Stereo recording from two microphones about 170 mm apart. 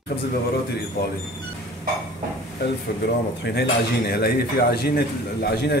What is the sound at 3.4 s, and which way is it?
A man's voice, 75° left (ahead or behind).